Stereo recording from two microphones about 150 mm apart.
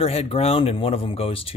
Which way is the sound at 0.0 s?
40° left (ahead or behind).